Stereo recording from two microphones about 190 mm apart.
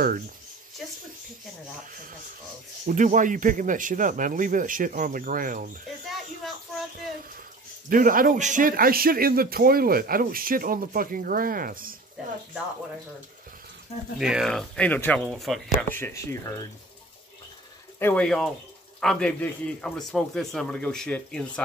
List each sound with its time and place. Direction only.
2.9 s a man's voice: 45° right (ahead or behind)
6.0 s a sound: centre (ahead or behind)
7.9 s a man's voice: 45° right (ahead or behind)
14.1 s speech: 5° right (ahead or behind)
15.9 s speech: 15° left (ahead or behind)
17.9 s speech: 10° left (ahead or behind)